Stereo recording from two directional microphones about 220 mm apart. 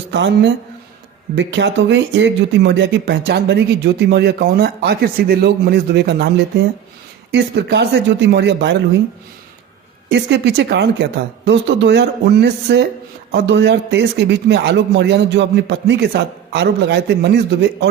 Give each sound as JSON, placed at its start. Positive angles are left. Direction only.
{"t": 0.1, "sound": "speech", "side_deg": -50}
{"t": 10.1, "sound": "speech", "side_deg": -50}